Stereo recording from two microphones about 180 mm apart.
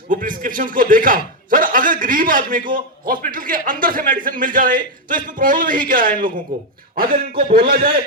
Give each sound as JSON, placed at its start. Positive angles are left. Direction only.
{"t": 0.1, "sound": "a man's voice", "side_deg": -50}